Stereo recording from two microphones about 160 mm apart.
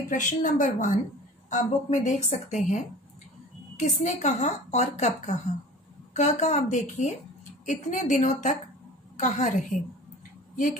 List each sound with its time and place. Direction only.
0.1 s a woman's voice: 55° left (ahead or behind)
10.5 s a woman's voice: 55° left (ahead or behind)